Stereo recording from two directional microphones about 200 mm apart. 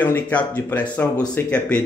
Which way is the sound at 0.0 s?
10° left (ahead or behind).